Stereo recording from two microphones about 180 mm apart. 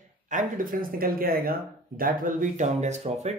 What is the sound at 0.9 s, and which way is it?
Speech, 55° right (ahead or behind).